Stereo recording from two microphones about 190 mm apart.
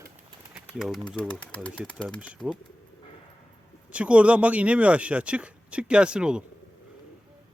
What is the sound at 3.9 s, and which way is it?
Speech, 5° right (ahead or behind).